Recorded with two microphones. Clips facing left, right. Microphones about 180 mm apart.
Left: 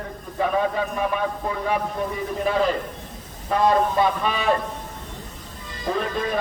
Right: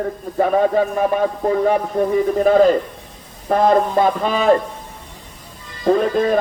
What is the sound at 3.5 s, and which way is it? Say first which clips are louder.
A man's voice: right 5 dB; 45° right (ahead or behind).